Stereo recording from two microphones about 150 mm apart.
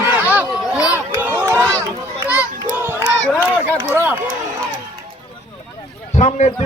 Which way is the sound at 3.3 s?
10° left (ahead or behind).